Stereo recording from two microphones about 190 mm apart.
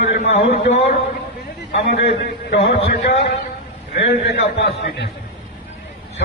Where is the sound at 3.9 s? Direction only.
60° left (ahead or behind).